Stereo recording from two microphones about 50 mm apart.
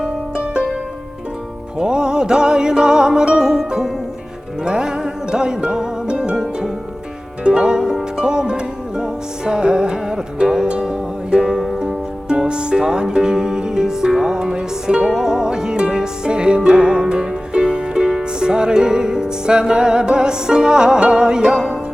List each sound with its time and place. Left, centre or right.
0.0 s music: centre
1.8 s music: centre
6.3 s harp: centre
7.4 s music: centre